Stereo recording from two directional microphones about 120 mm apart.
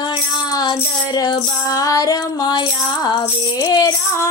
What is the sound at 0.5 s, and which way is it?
Music, 35° left (ahead or behind).